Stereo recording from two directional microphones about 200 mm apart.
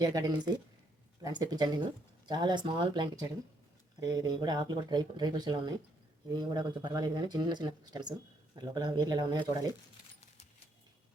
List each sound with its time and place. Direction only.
0.0 s speech: 20° right (ahead or behind)